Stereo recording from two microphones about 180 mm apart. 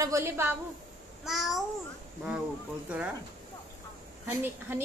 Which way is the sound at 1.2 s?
Centre (ahead or behind).